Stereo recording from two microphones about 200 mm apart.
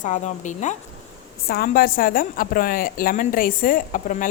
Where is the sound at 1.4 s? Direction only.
50° left (ahead or behind).